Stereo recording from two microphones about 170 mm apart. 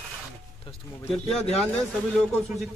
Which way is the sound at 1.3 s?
40° left (ahead or behind).